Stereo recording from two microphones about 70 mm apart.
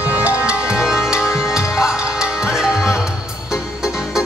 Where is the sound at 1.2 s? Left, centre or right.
Left.